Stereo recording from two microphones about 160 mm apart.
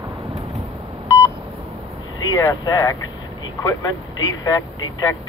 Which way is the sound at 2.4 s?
20° left (ahead or behind).